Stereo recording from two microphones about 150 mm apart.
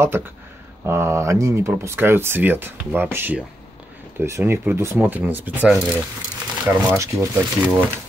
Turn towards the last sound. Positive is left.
turn(degrees=-15)  # may be behind; listen again after turning